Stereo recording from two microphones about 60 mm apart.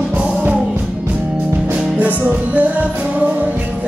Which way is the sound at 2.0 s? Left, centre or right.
Right.